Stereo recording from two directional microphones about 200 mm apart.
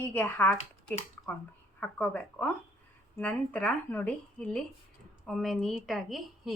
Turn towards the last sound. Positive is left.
turn(degrees=0)  # may be behind; listen again after turning